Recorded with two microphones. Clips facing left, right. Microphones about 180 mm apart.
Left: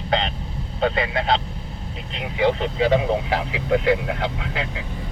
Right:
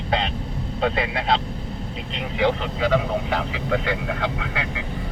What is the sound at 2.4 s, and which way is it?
Speech, 25° left (ahead or behind).